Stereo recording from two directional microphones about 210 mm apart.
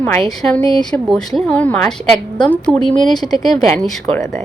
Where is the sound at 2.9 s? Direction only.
20° left (ahead or behind).